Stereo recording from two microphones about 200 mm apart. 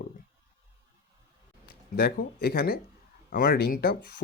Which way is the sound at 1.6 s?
50° left (ahead or behind).